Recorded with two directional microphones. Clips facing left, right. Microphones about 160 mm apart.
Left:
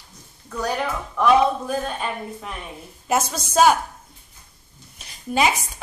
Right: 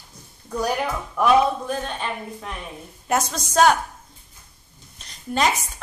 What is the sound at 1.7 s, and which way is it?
A woman's voice, 5° left (ahead or behind).